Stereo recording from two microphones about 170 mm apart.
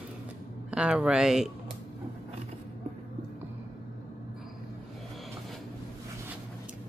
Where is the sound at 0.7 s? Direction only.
5° right (ahead or behind).